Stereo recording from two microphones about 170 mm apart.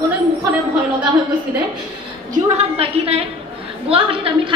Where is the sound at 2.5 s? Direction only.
35° right (ahead or behind).